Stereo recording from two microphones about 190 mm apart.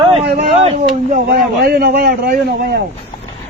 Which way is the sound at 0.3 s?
35° right (ahead or behind).